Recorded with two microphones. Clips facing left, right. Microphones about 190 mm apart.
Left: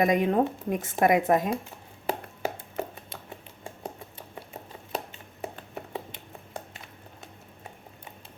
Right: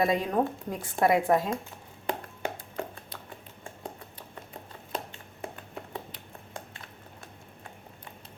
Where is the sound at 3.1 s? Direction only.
25° left (ahead or behind).